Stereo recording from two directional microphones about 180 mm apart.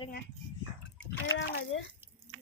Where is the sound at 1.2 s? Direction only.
90° left.